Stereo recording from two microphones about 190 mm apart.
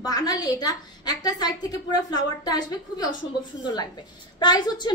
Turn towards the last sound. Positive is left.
turn(degrees=20)  # may be behind; listen again after turning